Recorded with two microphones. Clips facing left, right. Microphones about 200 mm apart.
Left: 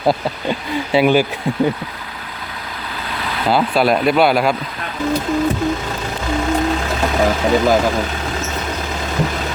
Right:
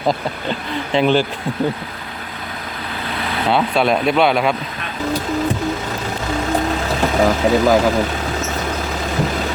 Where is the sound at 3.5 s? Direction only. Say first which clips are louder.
Left 2 dB; centre (ahead or behind).